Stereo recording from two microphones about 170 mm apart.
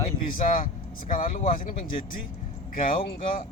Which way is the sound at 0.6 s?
50° left (ahead or behind).